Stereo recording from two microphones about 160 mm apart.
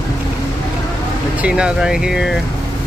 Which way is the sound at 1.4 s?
5° right (ahead or behind).